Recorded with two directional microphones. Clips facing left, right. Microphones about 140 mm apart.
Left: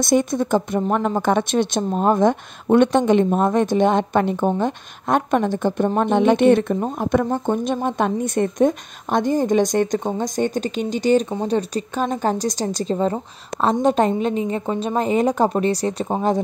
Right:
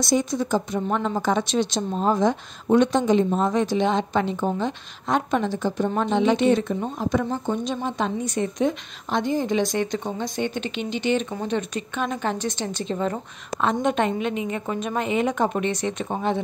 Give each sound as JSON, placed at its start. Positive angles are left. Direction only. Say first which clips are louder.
{"t": 0.0, "sound": "a woman's voice", "louder": "left 4 dB", "side_deg": 55}